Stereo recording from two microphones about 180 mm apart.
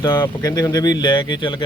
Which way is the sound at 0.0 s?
20° left (ahead or behind).